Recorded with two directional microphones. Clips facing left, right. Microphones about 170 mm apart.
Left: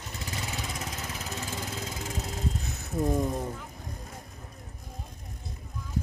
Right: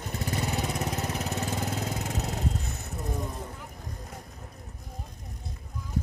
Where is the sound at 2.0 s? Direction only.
65° right (ahead or behind).